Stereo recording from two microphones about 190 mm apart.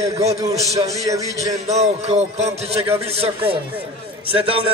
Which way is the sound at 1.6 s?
35° right (ahead or behind).